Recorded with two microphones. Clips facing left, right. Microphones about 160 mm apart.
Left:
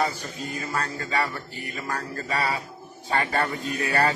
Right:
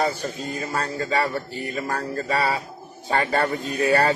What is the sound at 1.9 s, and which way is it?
Speech, 30° right (ahead or behind).